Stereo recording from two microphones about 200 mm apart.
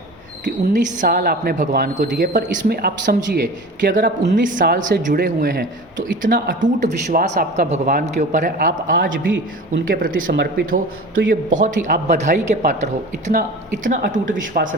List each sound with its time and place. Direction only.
0.4 s a woman's voice: 40° right (ahead or behind)